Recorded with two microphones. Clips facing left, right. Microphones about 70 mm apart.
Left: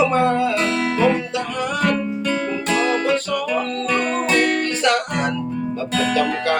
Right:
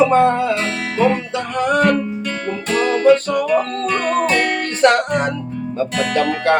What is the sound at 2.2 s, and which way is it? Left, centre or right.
Music, centre.